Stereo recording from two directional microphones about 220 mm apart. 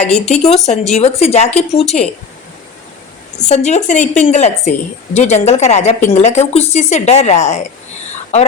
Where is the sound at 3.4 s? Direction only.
30° left (ahead or behind).